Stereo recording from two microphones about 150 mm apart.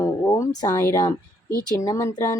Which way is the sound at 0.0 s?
20° left (ahead or behind).